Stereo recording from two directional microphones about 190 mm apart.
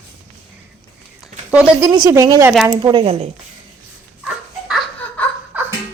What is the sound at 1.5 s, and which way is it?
A woman's voice, 10° right (ahead or behind).